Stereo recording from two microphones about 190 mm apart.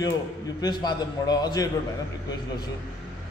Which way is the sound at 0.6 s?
20° left (ahead or behind).